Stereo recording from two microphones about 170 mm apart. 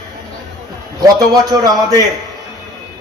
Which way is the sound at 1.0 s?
20° right (ahead or behind).